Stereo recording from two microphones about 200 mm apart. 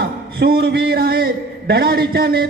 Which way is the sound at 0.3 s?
50° right (ahead or behind).